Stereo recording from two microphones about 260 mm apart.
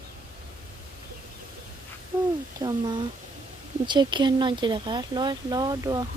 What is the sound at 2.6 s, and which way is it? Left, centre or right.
Speech, centre.